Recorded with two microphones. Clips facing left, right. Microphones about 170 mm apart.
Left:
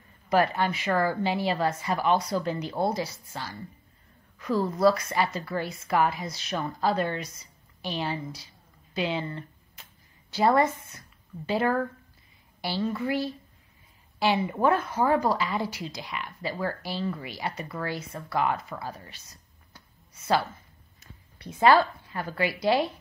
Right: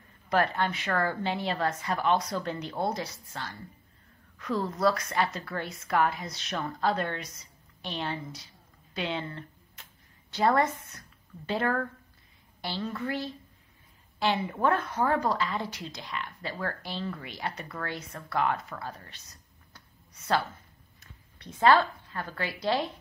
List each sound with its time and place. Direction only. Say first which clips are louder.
0.3 s a woman's voice: left 3 dB; 5° left (ahead or behind)
21.4 s a woman's voice: left 2 dB; 5° left (ahead or behind)